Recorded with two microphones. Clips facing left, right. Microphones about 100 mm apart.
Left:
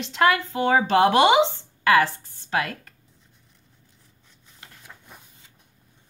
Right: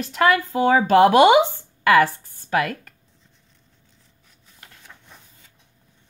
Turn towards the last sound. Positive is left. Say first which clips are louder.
# left 1 dB
turn(degrees=10)  # may be behind; listen again after turning